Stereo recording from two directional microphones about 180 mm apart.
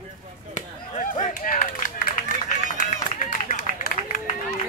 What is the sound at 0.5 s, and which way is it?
Chop, 45° left (ahead or behind).